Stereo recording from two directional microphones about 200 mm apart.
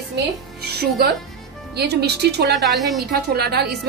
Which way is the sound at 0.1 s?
55° right (ahead or behind).